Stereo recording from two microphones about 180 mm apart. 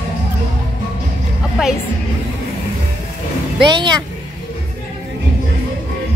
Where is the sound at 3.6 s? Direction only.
25° right (ahead or behind).